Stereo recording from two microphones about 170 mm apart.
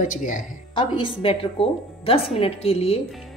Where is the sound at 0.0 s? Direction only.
50° left (ahead or behind).